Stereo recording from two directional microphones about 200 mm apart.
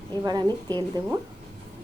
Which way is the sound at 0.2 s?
20° right (ahead or behind).